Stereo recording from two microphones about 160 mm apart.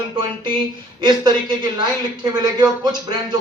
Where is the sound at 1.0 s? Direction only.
25° right (ahead or behind).